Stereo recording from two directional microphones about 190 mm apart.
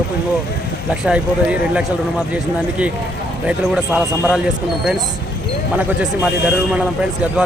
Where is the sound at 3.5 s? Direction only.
5° right (ahead or behind).